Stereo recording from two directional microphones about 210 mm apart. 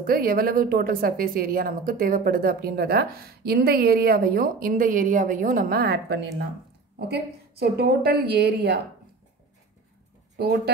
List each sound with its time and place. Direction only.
0.0 s speech: 45° right (ahead or behind)
10.3 s speech: 55° right (ahead or behind)